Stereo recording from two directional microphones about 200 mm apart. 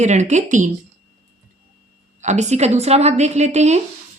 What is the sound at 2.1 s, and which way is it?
A woman's voice, 35° right (ahead or behind).